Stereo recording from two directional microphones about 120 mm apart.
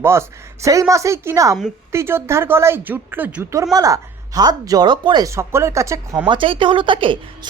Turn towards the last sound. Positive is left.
turn(degrees=-45)  # may be behind; listen again after turning